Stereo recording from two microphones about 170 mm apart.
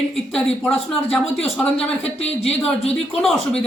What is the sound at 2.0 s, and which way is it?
Speech, 35° left (ahead or behind).